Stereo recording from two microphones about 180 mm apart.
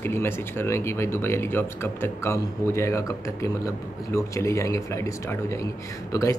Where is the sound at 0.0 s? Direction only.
15° left (ahead or behind).